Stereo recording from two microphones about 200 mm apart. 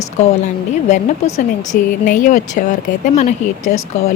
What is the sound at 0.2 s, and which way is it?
Speech, 35° left (ahead or behind).